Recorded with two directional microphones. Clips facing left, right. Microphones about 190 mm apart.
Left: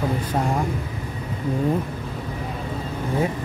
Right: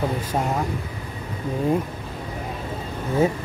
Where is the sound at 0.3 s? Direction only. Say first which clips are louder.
Left 1 dB; 5° right (ahead or behind).